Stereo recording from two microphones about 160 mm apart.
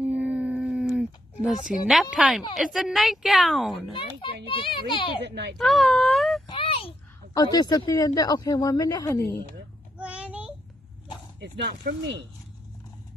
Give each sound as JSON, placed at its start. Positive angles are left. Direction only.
{"t": 0.0, "sound": "a sound", "side_deg": -10}
{"t": 1.7, "sound": "a woman's voice", "side_deg": 0}
{"t": 4.5, "sound": "a child's voice", "side_deg": 35}
{"t": 5.2, "sound": "speech", "side_deg": -90}
{"t": 5.6, "sound": "speech", "side_deg": 0}
{"t": 6.4, "sound": "a sound", "side_deg": 30}
{"t": 7.3, "sound": "speech", "side_deg": 25}
{"t": 9.9, "sound": "child singing", "side_deg": -10}
{"t": 11.3, "sound": "speech", "side_deg": -90}